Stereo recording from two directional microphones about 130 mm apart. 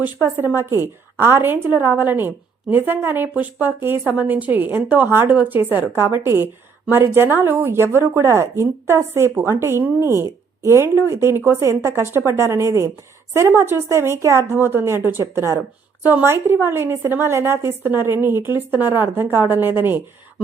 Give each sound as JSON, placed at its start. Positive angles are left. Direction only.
{"t": 0.0, "sound": "a woman's voice", "side_deg": -15}